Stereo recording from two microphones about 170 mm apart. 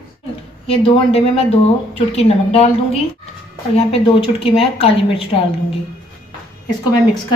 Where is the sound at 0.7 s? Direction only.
35° left (ahead or behind).